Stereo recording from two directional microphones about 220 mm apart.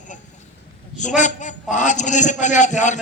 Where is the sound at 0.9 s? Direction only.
35° left (ahead or behind).